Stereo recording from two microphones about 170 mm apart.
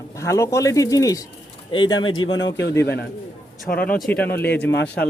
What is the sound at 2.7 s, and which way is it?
Speech, 10° left (ahead or behind).